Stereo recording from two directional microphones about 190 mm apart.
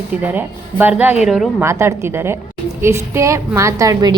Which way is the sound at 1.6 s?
15° right (ahead or behind).